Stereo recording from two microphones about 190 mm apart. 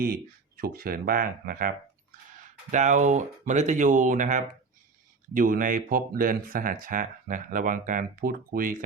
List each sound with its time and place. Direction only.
0.0 s speech: 55° right (ahead or behind)
2.7 s speech: 40° right (ahead or behind)